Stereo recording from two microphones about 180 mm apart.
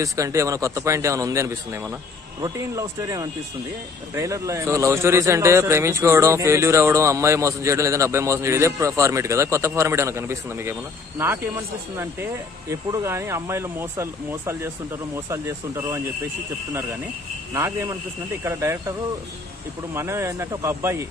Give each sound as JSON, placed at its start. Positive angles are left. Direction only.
{"t": 0.0, "sound": "a man's voice", "side_deg": -15}
{"t": 17.6, "sound": "a man's voice", "side_deg": -15}